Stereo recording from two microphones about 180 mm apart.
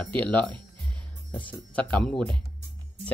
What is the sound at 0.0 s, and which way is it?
Speech, 10° left (ahead or behind).